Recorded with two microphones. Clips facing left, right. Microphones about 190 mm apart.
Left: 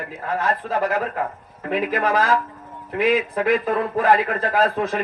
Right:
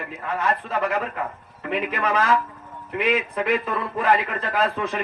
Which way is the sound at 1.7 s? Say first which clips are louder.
Left 3 dB; 40° left (ahead or behind).